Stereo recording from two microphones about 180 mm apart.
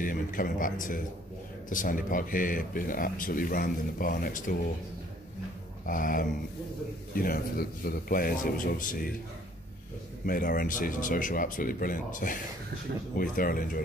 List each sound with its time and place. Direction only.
0.0 s speech: 50° left (ahead or behind)
5.9 s speech: 50° left (ahead or behind)
10.2 s speech: 50° left (ahead or behind)